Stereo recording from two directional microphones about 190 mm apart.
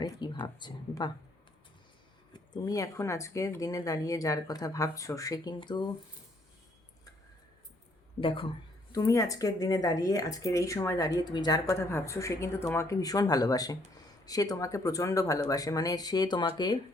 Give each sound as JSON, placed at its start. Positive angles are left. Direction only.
{"t": 0.0, "sound": "speech", "side_deg": 25}
{"t": 2.3, "sound": "speech", "side_deg": 20}
{"t": 8.2, "sound": "speech", "side_deg": 25}